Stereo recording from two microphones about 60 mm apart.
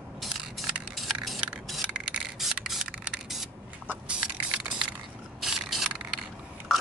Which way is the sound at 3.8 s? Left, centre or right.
Right.